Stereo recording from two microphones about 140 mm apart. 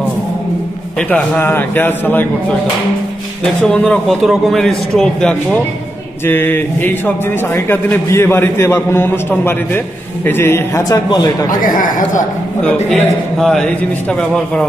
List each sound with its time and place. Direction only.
1.1 s a man's voice: 10° left (ahead or behind)
3.6 s a man's voice: 5° left (ahead or behind)
6.2 s a man's voice: 15° left (ahead or behind)
12.6 s a man's voice: 5° left (ahead or behind)